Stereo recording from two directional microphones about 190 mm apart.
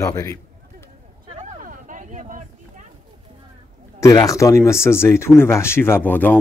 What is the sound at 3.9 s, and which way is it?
Speech, 15° left (ahead or behind).